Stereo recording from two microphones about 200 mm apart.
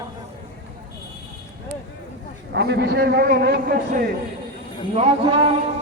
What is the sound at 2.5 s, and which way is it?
A man's voice, 55° right (ahead or behind).